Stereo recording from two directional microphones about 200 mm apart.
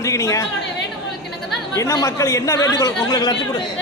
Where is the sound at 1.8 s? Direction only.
15° left (ahead or behind).